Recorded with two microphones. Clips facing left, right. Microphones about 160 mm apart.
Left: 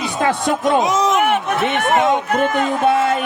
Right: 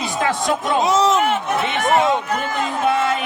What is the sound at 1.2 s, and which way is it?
Run, 60° left (ahead or behind).